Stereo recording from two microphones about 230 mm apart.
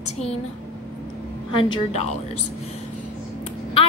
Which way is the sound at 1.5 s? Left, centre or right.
Left.